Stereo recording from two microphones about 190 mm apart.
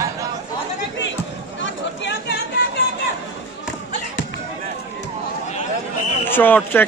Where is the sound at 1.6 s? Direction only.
70° left (ahead or behind).